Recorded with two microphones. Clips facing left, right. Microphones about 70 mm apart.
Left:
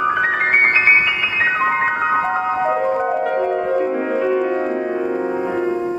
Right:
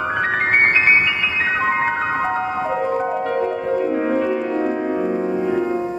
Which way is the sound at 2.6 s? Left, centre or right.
Centre.